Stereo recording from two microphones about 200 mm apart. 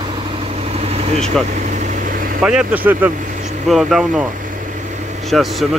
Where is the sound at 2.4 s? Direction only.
5° right (ahead or behind).